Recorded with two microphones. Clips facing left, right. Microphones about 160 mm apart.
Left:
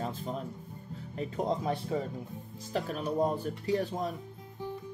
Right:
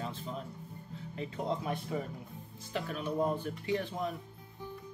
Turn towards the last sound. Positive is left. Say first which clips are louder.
# left 3 dB
turn(degrees=40)  # may be behind; listen again after turning